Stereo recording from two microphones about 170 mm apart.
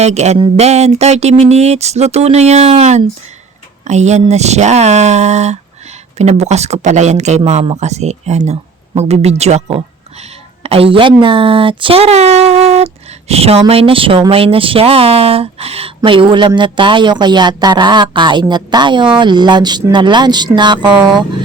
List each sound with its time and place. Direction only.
0.0 s speech: 40° right (ahead or behind)